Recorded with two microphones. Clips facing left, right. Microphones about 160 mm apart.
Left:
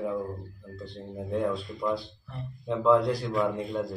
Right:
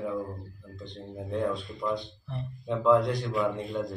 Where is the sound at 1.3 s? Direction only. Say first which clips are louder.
Left 1 dB; centre (ahead or behind).